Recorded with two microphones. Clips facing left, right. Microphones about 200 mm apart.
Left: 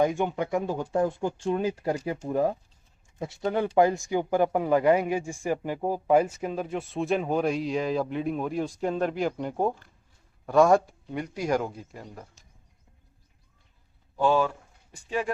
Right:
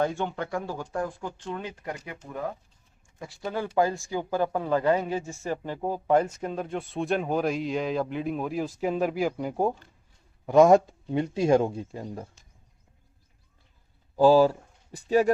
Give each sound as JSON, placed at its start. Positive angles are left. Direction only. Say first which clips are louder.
{"t": 0.0, "sound": "speech", "louder": "left 3 dB", "side_deg": 15}
{"t": 3.2, "sound": "speech", "louder": "left 5 dB", "side_deg": 20}
{"t": 10.4, "sound": "speech", "louder": "right 3 dB", "side_deg": -20}
{"t": 14.2, "sound": "speech", "louder": "right 6 dB", "side_deg": -35}